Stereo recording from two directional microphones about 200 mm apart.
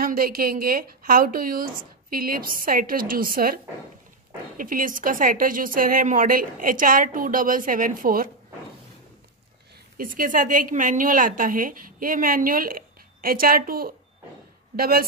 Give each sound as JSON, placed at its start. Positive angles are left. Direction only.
{"t": 0.0, "sound": "a woman's voice", "side_deg": -45}
{"t": 4.6, "sound": "a woman's voice", "side_deg": -45}
{"t": 9.9, "sound": "a woman's voice", "side_deg": -45}